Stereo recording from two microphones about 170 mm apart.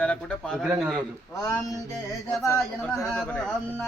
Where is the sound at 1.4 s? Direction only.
20° left (ahead or behind).